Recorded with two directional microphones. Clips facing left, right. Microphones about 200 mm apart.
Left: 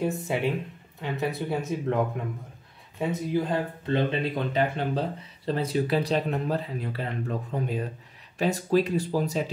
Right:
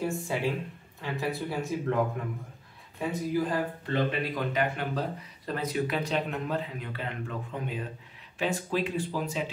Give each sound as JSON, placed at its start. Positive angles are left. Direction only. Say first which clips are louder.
{"t": 0.0, "sound": "speech", "louder": "left 3 dB", "side_deg": 20}
{"t": 3.0, "sound": "speech", "louder": "left 2 dB", "side_deg": 25}